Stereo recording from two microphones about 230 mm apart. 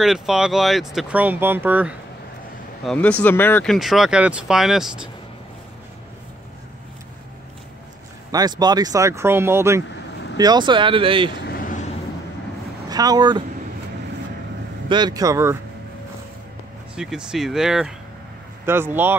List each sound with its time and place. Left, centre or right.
0.0 s speech: centre
2.8 s speech: centre
8.3 s speech: centre
11.4 s vehicle: left
12.9 s speech: centre
14.9 s speech: centre
16.9 s speech: centre